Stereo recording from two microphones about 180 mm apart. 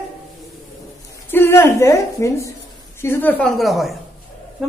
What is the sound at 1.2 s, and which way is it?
A woman's voice, 15° left (ahead or behind).